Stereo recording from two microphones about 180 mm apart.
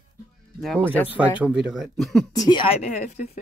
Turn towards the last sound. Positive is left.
turn(degrees=30)  # may be behind; listen again after turning